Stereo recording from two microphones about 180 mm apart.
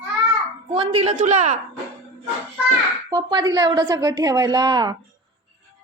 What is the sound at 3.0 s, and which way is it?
A woman's voice, 20° right (ahead or behind).